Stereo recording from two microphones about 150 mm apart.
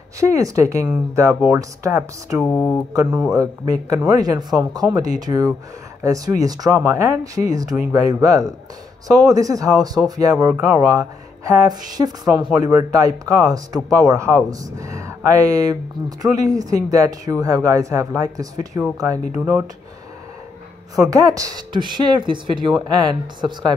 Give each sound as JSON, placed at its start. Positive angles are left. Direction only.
{"t": 0.2, "sound": "speech", "side_deg": -20}
{"t": 2.4, "sound": "mantra", "side_deg": 15}
{"t": 3.3, "sound": "speech", "side_deg": -25}
{"t": 21.1, "sound": "speech", "side_deg": -25}